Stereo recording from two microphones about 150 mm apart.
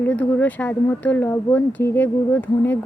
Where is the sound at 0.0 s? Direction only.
10° left (ahead or behind).